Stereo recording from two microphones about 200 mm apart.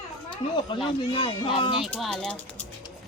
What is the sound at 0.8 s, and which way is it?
Speech, 25° left (ahead or behind).